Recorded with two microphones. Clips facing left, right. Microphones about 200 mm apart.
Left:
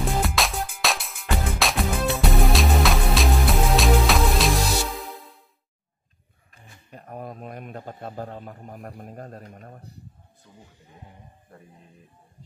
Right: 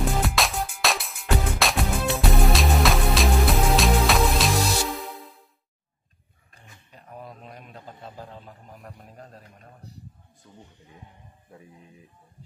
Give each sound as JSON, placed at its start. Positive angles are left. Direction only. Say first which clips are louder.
{"t": 0.0, "sound": "music", "louder": "even", "side_deg": 0}
{"t": 6.9, "sound": "a man's voice", "louder": "left 5 dB", "side_deg": 50}
{"t": 10.4, "sound": "speech", "louder": "right 2 dB", "side_deg": 0}